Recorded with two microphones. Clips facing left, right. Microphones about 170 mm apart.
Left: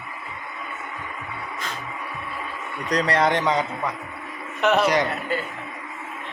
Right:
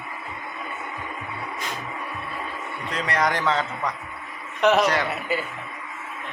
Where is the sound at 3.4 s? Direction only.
15° left (ahead or behind).